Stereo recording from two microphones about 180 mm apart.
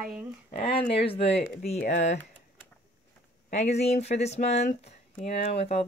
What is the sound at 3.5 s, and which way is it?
Speech, 35° left (ahead or behind).